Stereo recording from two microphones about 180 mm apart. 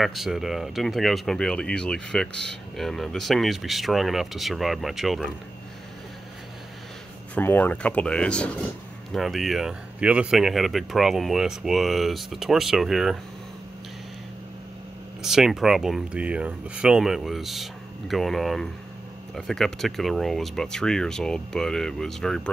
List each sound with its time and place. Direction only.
0.0 s speech: centre (ahead or behind)
7.3 s speech: 10° left (ahead or behind)
15.2 s speech: 5° right (ahead or behind)